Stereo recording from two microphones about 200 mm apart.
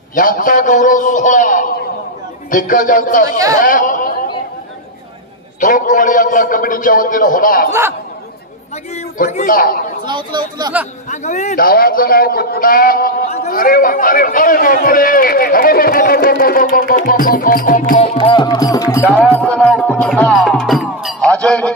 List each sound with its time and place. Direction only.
0.1 s a man's voice: 45° left (ahead or behind)
3.3 s speech: 15° right (ahead or behind)
3.6 s chatter: 40° left (ahead or behind)
5.6 s a man's voice: 40° left (ahead or behind)
9.3 s speech: 40° left (ahead or behind)
10.0 s speech: 20° right (ahead or behind)
11.1 s speech: 35° left (ahead or behind)
18.1 s music: 25° left (ahead or behind)
19.1 s music: 5° left (ahead or behind)